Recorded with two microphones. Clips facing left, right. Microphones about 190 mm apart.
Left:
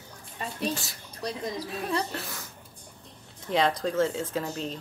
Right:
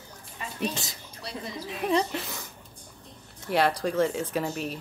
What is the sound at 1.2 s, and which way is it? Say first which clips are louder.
Speech: left 4 dB; 40° left (ahead or behind).